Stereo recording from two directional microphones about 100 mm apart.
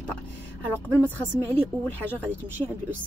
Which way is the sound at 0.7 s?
20° left (ahead or behind).